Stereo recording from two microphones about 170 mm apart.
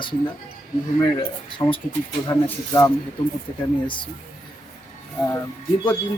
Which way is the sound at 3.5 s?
35° left (ahead or behind).